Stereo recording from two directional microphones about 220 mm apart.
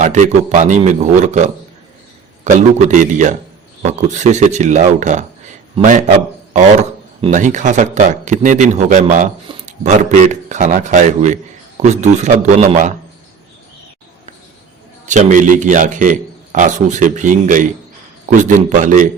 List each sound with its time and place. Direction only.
0.0 s a man's voice: 35° right (ahead or behind)
15.0 s a man's voice: 35° right (ahead or behind)